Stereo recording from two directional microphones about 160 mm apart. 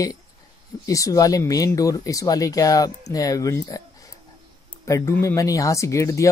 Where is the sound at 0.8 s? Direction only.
20° left (ahead or behind).